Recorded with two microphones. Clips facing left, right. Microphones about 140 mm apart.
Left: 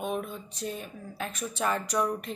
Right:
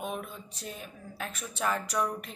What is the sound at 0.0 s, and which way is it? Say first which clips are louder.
Speech: left 4 dB; centre (ahead or behind).